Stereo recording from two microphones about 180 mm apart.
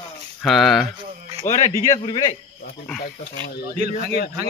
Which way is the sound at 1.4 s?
40° left (ahead or behind).